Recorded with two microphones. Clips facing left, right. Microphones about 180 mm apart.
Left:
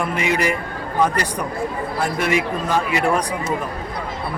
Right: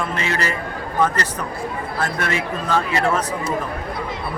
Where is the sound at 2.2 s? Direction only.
15° left (ahead or behind).